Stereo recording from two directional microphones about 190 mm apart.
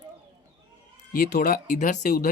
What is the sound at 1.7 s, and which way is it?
Speech, 40° left (ahead or behind).